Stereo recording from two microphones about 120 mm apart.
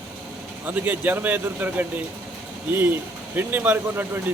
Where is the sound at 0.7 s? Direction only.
15° right (ahead or behind).